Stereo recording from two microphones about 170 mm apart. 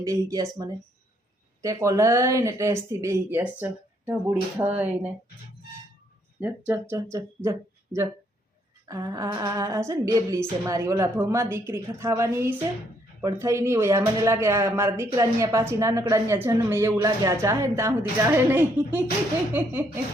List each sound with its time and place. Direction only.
0.0 s speech: 20° right (ahead or behind)
1.6 s speech: 20° right (ahead or behind)
6.4 s speech: 15° right (ahead or behind)
8.9 s speech: 20° right (ahead or behind)